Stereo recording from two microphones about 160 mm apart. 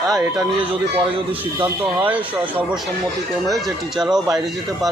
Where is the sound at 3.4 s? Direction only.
Centre (ahead or behind).